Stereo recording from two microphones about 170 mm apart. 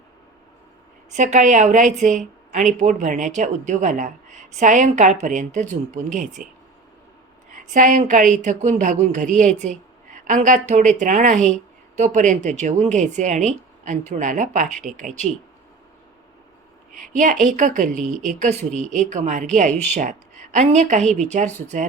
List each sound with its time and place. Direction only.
1.1 s speech: 45° right (ahead or behind)
7.5 s a woman's voice: 50° right (ahead or behind)
16.9 s a woman's voice: 50° right (ahead or behind)
17.9 s speech: 5° left (ahead or behind)
18.3 s speech: 45° right (ahead or behind)